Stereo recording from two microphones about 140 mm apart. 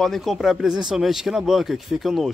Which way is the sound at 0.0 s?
Centre (ahead or behind).